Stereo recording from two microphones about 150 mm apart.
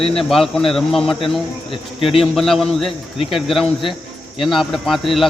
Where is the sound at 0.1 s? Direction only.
Centre (ahead or behind).